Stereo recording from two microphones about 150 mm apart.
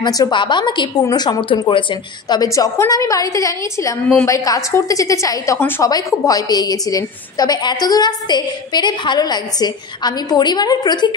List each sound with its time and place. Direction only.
0.0 s a woman's voice: 25° left (ahead or behind)